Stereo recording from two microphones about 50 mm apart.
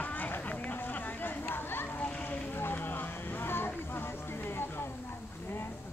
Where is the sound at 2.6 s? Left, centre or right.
Left.